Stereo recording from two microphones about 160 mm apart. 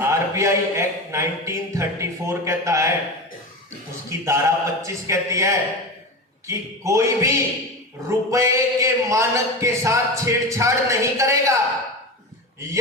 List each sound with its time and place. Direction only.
0.0 s speech: 15° right (ahead or behind)
4.3 s speech: 20° right (ahead or behind)